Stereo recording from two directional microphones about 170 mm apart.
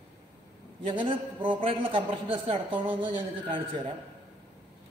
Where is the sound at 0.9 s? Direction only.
30° right (ahead or behind).